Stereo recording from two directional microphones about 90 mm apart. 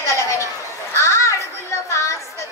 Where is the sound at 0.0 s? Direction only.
35° left (ahead or behind).